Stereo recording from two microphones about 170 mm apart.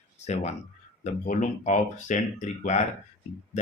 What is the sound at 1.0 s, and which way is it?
Speech, 45° left (ahead or behind).